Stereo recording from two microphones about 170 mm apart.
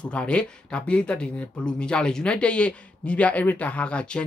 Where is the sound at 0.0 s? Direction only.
5° left (ahead or behind).